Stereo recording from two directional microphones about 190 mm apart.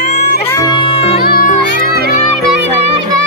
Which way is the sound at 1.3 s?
55° left (ahead or behind).